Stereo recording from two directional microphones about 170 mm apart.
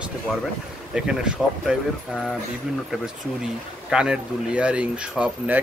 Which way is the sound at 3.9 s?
5° right (ahead or behind).